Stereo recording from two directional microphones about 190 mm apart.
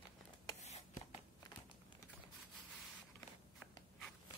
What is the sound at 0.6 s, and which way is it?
Writing, 35° left (ahead or behind).